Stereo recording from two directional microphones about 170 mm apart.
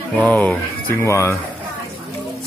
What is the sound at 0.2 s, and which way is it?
Speech, 10° left (ahead or behind).